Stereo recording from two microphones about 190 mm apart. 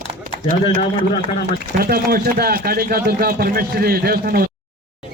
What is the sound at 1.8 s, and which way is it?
Speech, 50° right (ahead or behind).